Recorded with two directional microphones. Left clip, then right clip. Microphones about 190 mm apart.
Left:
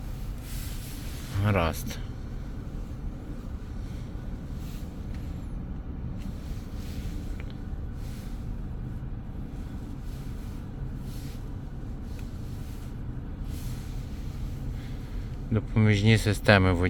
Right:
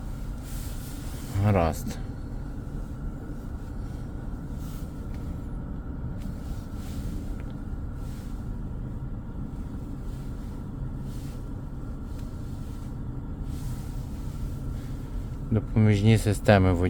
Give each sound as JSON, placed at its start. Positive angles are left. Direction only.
{"t": 1.4, "sound": "speech", "side_deg": -20}
{"t": 15.5, "sound": "speech", "side_deg": -10}